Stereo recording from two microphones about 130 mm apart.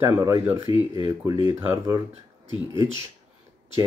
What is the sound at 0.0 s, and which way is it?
Speech, 25° right (ahead or behind).